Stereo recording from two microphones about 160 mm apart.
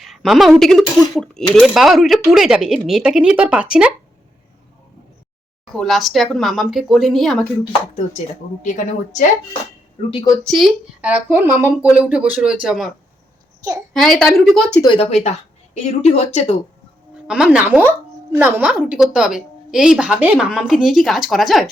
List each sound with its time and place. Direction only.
0.0 s a sound: centre (ahead or behind)
0.6 s a woman's voice: 5° left (ahead or behind)
5.7 s a woman's voice: centre (ahead or behind)
8.6 s speech: 50° left (ahead or behind)
10.1 s speech: 30° left (ahead or behind)
10.4 s speech: centre (ahead or behind)
13.9 s a woman's voice: centre (ahead or behind)
14.8 s speech: 40° left (ahead or behind)
17.2 s a woman's voice: 5° right (ahead or behind)